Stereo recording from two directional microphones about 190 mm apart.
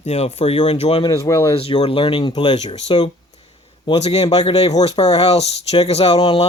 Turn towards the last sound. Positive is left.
turn(degrees=35)  # may be behind; listen again after turning